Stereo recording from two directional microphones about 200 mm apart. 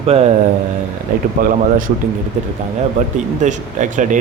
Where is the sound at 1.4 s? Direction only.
45° right (ahead or behind).